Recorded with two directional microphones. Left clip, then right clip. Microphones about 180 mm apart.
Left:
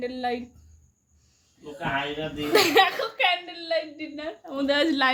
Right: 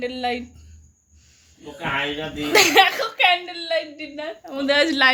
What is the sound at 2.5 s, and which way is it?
Speech, centre (ahead or behind).